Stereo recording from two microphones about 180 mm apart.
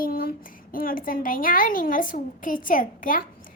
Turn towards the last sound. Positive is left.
turn(degrees=50)  # may be behind; listen again after turning